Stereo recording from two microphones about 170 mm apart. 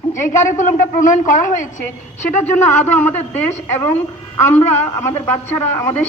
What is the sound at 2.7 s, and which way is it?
Speech, 10° left (ahead or behind).